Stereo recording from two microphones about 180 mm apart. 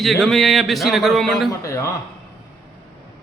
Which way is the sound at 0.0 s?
Centre (ahead or behind).